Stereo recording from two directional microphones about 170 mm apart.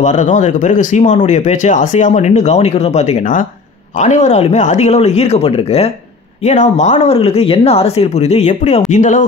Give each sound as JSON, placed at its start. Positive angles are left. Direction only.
{"t": 0.0, "sound": "speech", "side_deg": 45}